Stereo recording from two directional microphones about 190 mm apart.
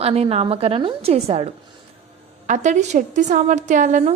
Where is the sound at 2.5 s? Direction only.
40° right (ahead or behind).